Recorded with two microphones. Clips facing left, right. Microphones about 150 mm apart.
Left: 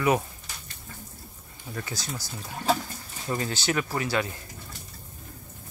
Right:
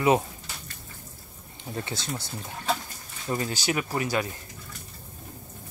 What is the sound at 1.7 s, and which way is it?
Speech, 25° right (ahead or behind).